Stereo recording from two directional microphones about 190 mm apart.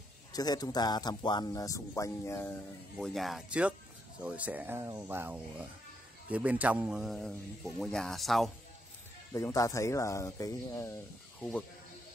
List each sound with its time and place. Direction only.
0.3 s speech: 20° left (ahead or behind)
3.0 s a man's voice: centre (ahead or behind)
9.3 s speech: 15° left (ahead or behind)